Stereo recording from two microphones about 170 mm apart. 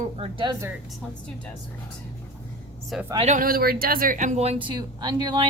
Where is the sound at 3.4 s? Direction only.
60° right (ahead or behind); by 4.5 s 40° right (ahead or behind).